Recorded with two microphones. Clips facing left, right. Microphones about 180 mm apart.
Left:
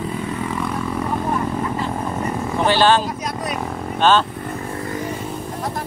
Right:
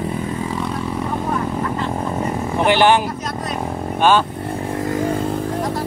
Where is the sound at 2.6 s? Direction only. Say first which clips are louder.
Right 2 dB; 15° right (ahead or behind).